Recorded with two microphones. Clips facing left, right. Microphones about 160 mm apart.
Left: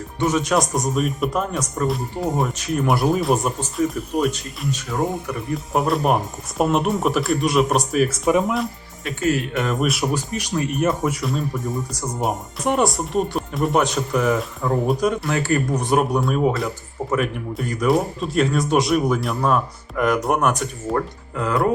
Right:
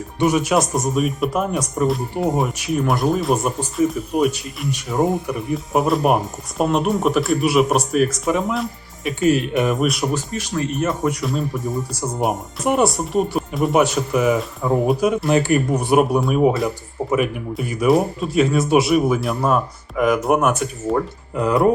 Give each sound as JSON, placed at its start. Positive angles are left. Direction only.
{"t": 0.2, "sound": "speech", "side_deg": -10}
{"t": 2.6, "sound": "speech", "side_deg": 0}
{"t": 4.7, "sound": "speech", "side_deg": -20}
{"t": 5.2, "sound": "speech", "side_deg": -10}
{"t": 9.0, "sound": "speech", "side_deg": -20}
{"t": 9.7, "sound": "speech", "side_deg": 0}
{"t": 10.2, "sound": "speech", "side_deg": 15}
{"t": 10.8, "sound": "speech", "side_deg": 0}
{"t": 15.3, "sound": "speech", "side_deg": -15}
{"t": 21.3, "sound": "speech", "side_deg": -20}